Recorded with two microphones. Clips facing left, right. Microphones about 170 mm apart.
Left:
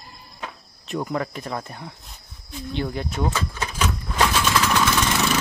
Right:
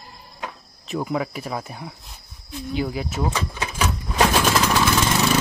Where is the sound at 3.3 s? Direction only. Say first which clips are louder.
Even; 15° right (ahead or behind).